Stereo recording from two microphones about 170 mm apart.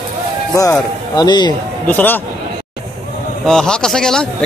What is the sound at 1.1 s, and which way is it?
Speech, 25° left (ahead or behind).